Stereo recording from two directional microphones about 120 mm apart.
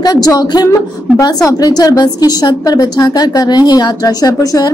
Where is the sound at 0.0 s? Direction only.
35° left (ahead or behind).